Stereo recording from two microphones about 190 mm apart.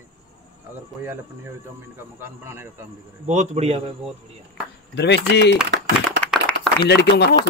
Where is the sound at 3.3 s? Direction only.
40° right (ahead or behind).